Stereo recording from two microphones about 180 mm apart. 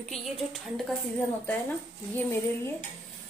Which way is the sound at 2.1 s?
15° left (ahead or behind).